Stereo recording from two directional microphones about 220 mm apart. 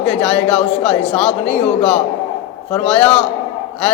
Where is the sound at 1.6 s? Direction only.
30° left (ahead or behind).